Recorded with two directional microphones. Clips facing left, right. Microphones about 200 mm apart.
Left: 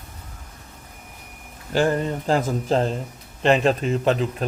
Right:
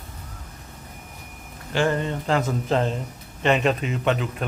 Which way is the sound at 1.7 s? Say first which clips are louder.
Left 2 dB; 40° left (ahead or behind).